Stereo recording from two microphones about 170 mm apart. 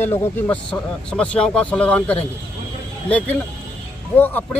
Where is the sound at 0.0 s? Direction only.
15° left (ahead or behind).